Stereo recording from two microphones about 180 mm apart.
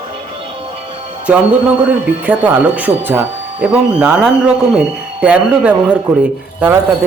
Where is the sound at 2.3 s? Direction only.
10° right (ahead or behind).